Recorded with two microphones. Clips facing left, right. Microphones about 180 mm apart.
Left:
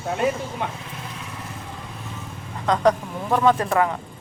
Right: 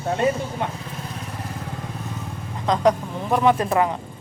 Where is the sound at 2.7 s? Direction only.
10° right (ahead or behind).